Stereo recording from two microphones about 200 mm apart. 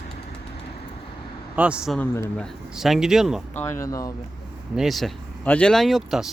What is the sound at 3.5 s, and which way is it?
Speech, 15° left (ahead or behind).